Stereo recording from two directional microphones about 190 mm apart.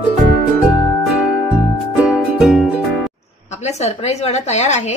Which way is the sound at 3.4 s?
35° left (ahead or behind).